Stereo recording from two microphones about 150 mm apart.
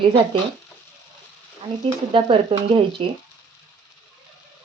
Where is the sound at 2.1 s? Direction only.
35° right (ahead or behind).